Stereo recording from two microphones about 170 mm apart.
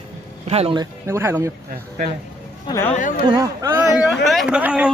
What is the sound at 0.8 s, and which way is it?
Speech, 15° right (ahead or behind).